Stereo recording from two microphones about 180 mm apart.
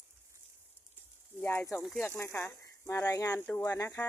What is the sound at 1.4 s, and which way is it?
Speech, 15° left (ahead or behind).